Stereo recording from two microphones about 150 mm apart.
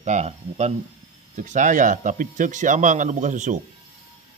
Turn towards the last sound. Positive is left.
turn(degrees=-55)  # may be behind; listen again after turning